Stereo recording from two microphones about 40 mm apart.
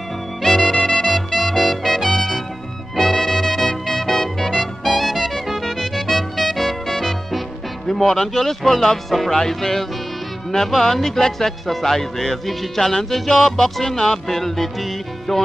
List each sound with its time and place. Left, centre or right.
0.4 s music: centre